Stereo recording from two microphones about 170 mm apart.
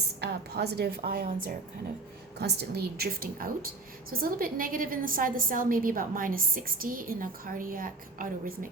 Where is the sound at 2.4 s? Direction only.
70° right (ahead or behind).